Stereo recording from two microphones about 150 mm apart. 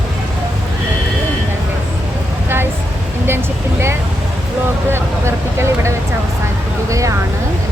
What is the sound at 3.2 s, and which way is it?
Vehicle, 15° right (ahead or behind).